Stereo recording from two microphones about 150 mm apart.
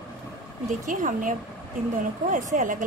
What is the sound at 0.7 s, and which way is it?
Speech, 55° right (ahead or behind).